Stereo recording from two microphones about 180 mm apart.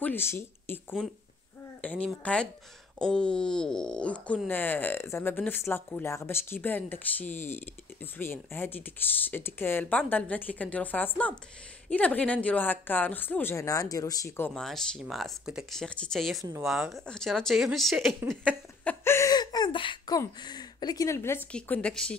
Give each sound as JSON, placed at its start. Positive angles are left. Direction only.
{"t": 0.0, "sound": "speech", "side_deg": 10}
{"t": 14.5, "sound": "speech", "side_deg": 0}
{"t": 18.9, "sound": "speech", "side_deg": 15}